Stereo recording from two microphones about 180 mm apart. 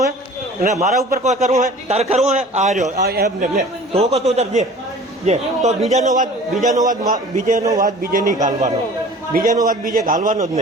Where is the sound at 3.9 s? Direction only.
35° right (ahead or behind).